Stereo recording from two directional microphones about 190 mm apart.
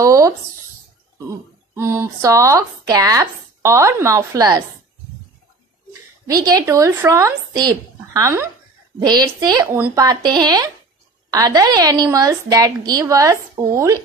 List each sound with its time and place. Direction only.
0.0 s a sound: 15° right (ahead or behind)
1.8 s speech: 15° right (ahead or behind)
6.4 s a woman's voice: 20° right (ahead or behind)